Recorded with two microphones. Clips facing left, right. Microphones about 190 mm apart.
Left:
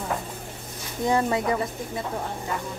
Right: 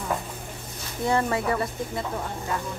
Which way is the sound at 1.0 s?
15° left (ahead or behind).